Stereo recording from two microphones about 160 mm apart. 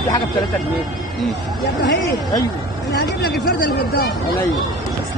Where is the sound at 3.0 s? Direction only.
70° left (ahead or behind).